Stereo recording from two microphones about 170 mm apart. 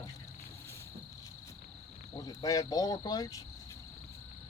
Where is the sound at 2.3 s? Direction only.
20° left (ahead or behind).